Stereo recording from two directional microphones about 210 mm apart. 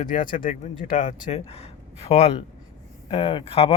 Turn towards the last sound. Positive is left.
turn(degrees=30)  # may be behind; listen again after turning